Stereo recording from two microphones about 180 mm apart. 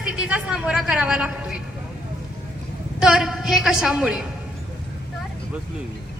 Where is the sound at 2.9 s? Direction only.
5° right (ahead or behind).